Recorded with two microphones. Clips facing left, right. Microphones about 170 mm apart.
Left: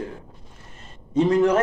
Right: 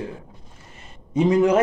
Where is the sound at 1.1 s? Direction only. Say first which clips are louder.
Right 1 dB; 10° right (ahead or behind).